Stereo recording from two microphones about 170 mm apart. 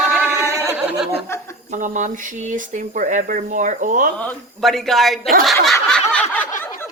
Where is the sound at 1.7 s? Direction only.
50° right (ahead or behind).